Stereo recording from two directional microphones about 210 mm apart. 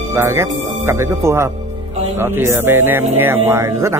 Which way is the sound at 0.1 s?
10° right (ahead or behind).